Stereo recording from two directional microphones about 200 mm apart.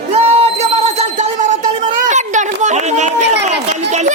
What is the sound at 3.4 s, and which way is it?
Speech, 35° right (ahead or behind).